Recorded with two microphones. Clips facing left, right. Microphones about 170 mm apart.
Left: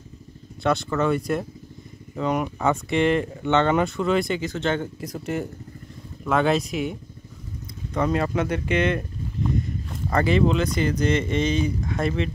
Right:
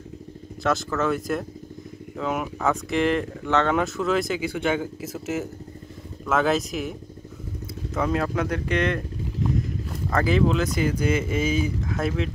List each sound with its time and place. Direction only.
0.7 s speech: centre (ahead or behind)